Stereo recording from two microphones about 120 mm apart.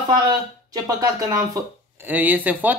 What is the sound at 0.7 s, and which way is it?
Speech, 30° right (ahead or behind).